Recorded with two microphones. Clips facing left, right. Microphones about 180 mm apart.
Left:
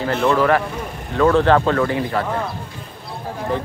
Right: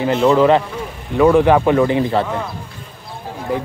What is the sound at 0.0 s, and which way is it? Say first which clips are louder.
Speech: right 4 dB; 15° right (ahead or behind).